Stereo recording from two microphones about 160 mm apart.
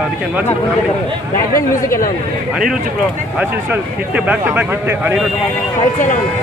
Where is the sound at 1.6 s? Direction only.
20° left (ahead or behind).